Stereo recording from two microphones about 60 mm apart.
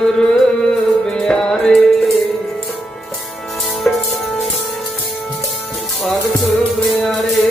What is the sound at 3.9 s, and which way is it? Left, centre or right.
Music, left.